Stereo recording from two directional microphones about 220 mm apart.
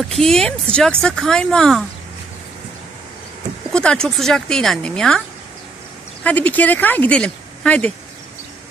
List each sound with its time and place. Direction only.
0.1 s speech: centre (ahead or behind)
3.7 s speech: 5° left (ahead or behind)
6.2 s speech: 5° left (ahead or behind)